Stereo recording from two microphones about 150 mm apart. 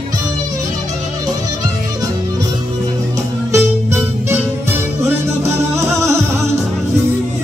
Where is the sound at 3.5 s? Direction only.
15° right (ahead or behind).